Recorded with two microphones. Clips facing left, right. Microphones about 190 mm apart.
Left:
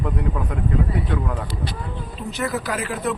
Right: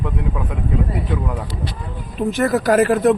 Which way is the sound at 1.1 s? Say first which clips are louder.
Right 3 dB; 5° right (ahead or behind).